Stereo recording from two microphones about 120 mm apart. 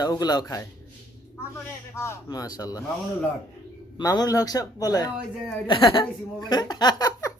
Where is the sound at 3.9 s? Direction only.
35° left (ahead or behind).